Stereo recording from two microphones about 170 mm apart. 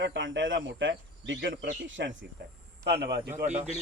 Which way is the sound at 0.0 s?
90° right.